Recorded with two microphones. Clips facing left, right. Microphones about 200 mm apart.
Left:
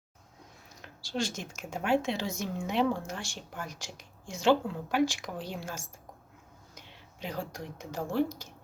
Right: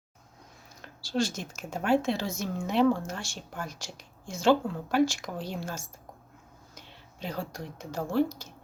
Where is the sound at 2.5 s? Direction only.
15° left (ahead or behind).